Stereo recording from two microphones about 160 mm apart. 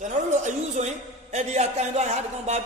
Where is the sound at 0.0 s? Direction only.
50° right (ahead or behind).